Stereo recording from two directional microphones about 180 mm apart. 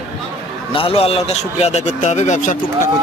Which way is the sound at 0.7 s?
30° left (ahead or behind).